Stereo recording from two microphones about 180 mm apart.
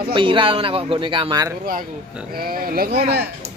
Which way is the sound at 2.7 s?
60° right (ahead or behind).